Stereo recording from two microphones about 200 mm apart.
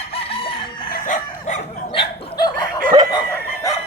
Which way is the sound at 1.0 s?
40° left (ahead or behind).